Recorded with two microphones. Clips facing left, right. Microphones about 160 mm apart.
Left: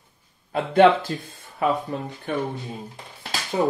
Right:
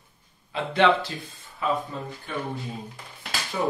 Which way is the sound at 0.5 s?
50° left (ahead or behind).